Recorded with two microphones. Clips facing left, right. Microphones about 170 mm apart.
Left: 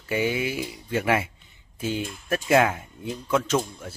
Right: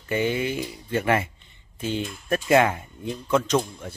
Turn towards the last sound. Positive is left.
turn(degrees=5)  # may be behind; listen again after turning